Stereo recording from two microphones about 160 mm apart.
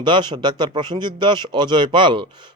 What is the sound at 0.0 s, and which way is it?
Speech, 30° right (ahead or behind).